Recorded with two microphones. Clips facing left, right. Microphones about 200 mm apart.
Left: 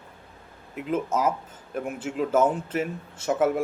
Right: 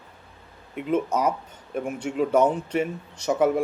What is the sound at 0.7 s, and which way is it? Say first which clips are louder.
Speech: right 2 dB; 5° left (ahead or behind).